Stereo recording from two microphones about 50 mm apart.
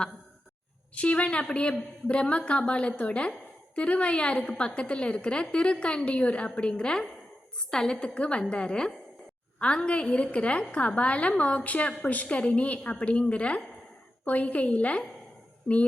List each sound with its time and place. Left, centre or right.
0.9 s a woman's voice: left